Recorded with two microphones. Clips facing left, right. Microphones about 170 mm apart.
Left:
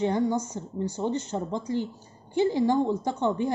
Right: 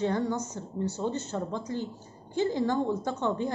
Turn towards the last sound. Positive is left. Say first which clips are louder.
# left 3 dB
turn(degrees=15)  # may be behind; listen again after turning